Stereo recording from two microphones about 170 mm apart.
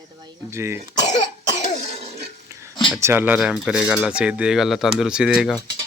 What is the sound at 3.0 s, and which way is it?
Speech, 15° right (ahead or behind).